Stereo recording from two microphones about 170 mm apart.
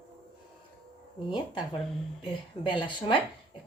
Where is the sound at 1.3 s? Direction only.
30° left (ahead or behind).